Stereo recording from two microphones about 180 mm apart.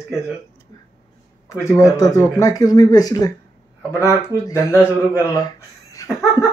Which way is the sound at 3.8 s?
15° right (ahead or behind).